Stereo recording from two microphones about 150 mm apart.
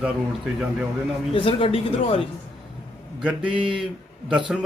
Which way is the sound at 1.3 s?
35° left (ahead or behind).